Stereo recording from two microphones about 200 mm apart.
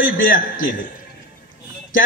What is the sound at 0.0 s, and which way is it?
Speech, 45° left (ahead or behind).